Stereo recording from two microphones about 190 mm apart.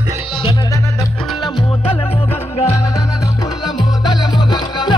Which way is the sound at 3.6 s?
20° left (ahead or behind).